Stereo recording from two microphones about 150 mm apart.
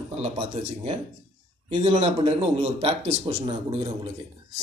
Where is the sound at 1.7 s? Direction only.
40° right (ahead or behind).